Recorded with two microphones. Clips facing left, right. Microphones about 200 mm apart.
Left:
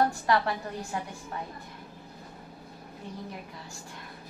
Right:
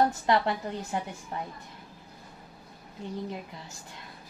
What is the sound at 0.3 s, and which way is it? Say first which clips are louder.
Speech: right 1 dB; 20° right (ahead or behind).